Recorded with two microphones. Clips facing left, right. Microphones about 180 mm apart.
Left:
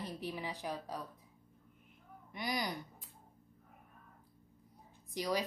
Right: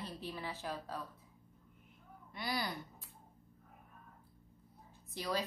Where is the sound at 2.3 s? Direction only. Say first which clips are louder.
Left 1 dB; 20° left (ahead or behind).